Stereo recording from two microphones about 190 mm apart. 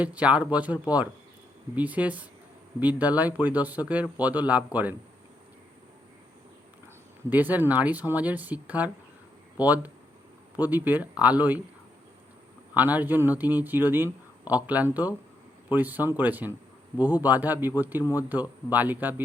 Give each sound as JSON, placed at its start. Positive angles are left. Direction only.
{"t": 0.0, "sound": "speech", "side_deg": -5}
{"t": 7.3, "sound": "speech", "side_deg": -10}
{"t": 12.7, "sound": "speech", "side_deg": -10}
{"t": 18.0, "sound": "speech", "side_deg": 20}
{"t": 18.3, "sound": "speech", "side_deg": -10}